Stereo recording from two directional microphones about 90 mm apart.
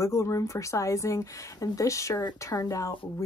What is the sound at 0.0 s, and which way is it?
Speech, 35° left (ahead or behind).